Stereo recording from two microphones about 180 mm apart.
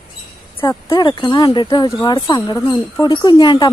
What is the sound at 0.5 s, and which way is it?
A woman's voice, 25° left (ahead or behind).